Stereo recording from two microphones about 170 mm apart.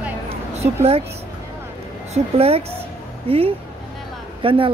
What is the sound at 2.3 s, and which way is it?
Speech, 35° right (ahead or behind).